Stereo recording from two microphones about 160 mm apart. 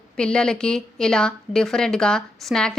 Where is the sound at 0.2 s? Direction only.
5° left (ahead or behind).